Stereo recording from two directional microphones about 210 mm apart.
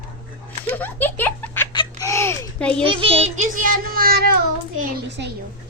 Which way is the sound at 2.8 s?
25° right (ahead or behind).